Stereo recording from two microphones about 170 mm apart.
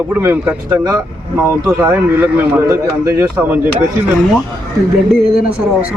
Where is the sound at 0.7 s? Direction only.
20° right (ahead or behind).